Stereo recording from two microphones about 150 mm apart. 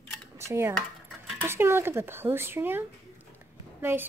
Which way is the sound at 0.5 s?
15° right (ahead or behind).